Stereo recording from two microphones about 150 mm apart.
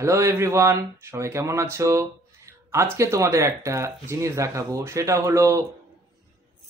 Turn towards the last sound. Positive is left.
turn(degrees=-20)  # may be behind; listen again after turning